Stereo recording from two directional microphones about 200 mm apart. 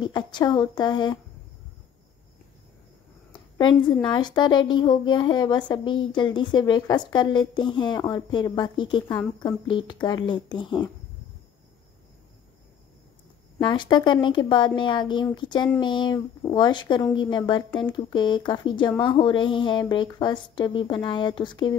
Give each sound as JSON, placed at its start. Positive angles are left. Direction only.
{"t": 0.0, "sound": "a woman's voice", "side_deg": 20}
{"t": 4.0, "sound": "a woman's voice", "side_deg": 20}
{"t": 13.6, "sound": "a woman's voice", "side_deg": 20}